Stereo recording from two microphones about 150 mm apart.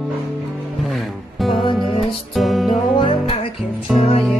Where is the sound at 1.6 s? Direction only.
35° left (ahead or behind).